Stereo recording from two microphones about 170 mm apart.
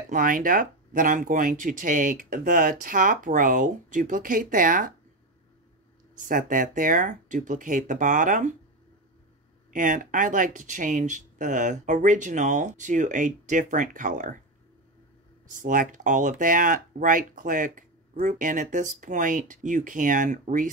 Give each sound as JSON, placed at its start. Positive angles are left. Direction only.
{"t": 0.1, "sound": "speech", "side_deg": -55}
{"t": 6.1, "sound": "speech", "side_deg": -50}
{"t": 9.7, "sound": "speech", "side_deg": -50}
{"t": 15.5, "sound": "speech", "side_deg": -50}